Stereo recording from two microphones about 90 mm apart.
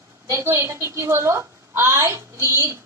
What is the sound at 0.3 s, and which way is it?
A woman's voice, 35° right (ahead or behind).